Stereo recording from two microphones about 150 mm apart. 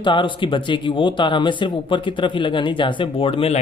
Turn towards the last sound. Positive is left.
turn(degrees=40)  # may be behind; listen again after turning